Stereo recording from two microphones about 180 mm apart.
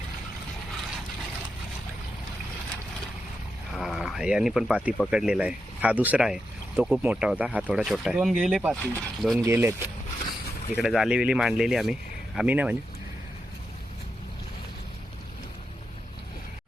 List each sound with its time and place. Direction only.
3.8 s speech: centre (ahead or behind)
9.4 s speech: 15° right (ahead or behind)
10.8 s speech: centre (ahead or behind)